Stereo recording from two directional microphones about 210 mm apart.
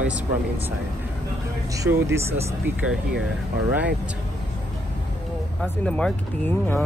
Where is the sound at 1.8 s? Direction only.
15° right (ahead or behind).